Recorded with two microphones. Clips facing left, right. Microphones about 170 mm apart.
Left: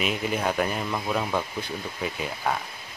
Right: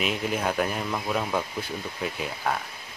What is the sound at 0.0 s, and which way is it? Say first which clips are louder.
Speech: left 1 dB; centre (ahead or behind).